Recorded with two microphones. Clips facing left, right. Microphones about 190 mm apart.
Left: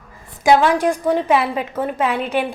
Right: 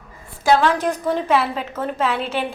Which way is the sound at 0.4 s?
10° left (ahead or behind).